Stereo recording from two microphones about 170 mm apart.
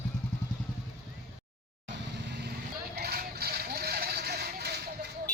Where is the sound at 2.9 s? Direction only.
65° right (ahead or behind).